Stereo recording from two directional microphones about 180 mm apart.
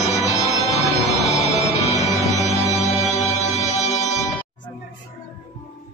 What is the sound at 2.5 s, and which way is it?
Music, 15° left (ahead or behind).